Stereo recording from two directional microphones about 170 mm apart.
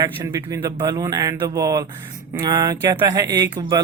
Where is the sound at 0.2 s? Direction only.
15° right (ahead or behind).